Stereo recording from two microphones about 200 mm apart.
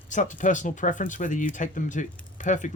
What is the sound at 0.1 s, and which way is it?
Speech, 40° left (ahead or behind).